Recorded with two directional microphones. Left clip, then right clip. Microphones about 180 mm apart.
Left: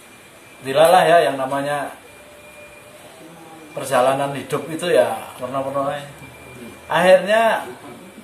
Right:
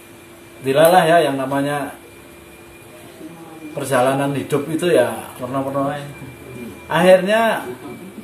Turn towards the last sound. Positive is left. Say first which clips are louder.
# right 1 dB
turn(degrees=-15)  # may be behind; listen again after turning